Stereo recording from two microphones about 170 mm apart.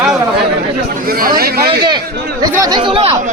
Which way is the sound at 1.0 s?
60° right (ahead or behind).